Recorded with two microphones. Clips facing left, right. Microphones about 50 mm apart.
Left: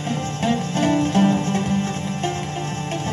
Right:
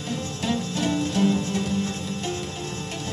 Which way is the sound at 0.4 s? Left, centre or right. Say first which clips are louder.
Left 5 dB; left.